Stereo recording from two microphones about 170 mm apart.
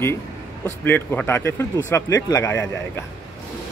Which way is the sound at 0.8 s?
10° left (ahead or behind).